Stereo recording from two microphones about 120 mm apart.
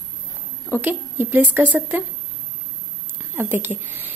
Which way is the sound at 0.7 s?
15° right (ahead or behind).